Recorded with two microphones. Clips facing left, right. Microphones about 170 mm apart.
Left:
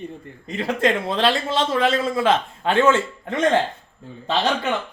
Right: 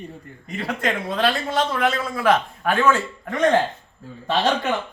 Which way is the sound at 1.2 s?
25° left (ahead or behind).